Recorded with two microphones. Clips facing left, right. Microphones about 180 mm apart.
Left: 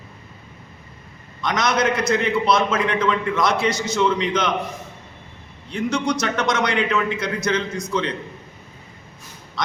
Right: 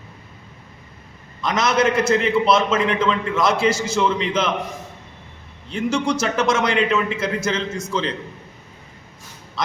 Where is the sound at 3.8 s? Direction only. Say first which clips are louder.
Even; 5° right (ahead or behind).